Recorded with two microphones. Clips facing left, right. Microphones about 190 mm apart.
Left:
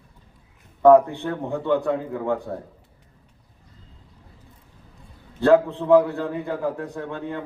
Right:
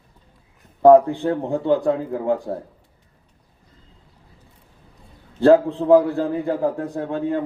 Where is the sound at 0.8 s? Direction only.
35° right (ahead or behind).